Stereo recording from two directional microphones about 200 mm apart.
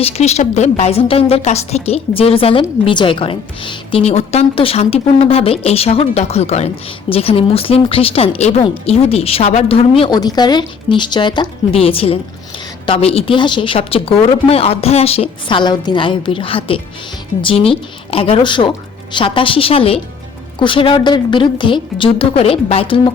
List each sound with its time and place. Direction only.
0.0 s a woman's voice: 35° left (ahead or behind)